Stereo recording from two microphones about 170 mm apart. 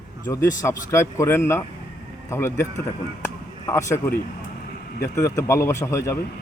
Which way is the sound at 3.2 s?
15° left (ahead or behind).